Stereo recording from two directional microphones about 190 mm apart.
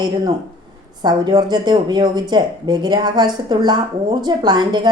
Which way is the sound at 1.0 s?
25° right (ahead or behind).